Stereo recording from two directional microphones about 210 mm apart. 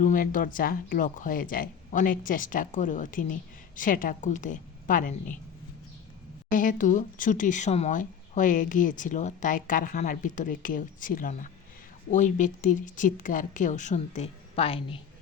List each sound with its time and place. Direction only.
0.0 s speech: 40° left (ahead or behind)
6.5 s speech: 40° left (ahead or behind)